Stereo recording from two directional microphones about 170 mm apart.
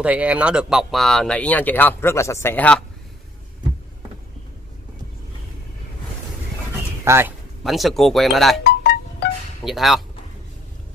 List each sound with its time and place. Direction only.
0.0 s speech: 10° right (ahead or behind); by 2.8 s 10° left (ahead or behind)
7.1 s speech: 15° right (ahead or behind)
7.6 s speech: centre (ahead or behind)
8.6 s music: 70° left (ahead or behind)
9.7 s speech: centre (ahead or behind)